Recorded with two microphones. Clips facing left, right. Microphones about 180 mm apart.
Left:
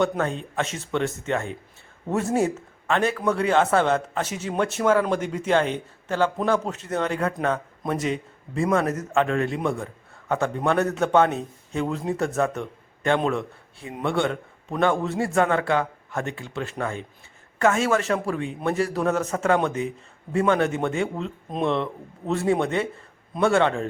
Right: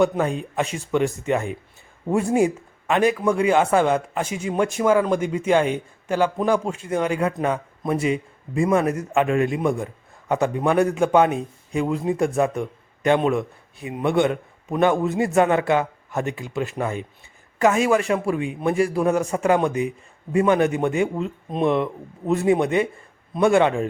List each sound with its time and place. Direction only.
0.2 s a man's voice: 10° right (ahead or behind)